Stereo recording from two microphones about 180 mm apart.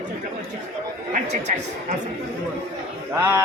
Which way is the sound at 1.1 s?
40° right (ahead or behind).